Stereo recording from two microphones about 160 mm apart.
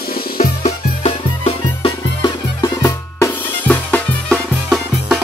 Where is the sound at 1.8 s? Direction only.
25° left (ahead or behind).